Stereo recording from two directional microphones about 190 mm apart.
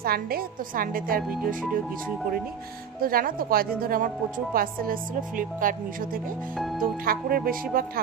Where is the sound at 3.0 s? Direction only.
50° right (ahead or behind).